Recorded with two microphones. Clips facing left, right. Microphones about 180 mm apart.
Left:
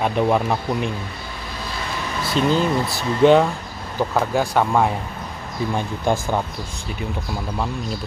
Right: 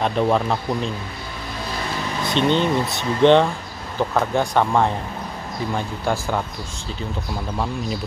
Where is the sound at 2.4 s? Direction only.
5° left (ahead or behind).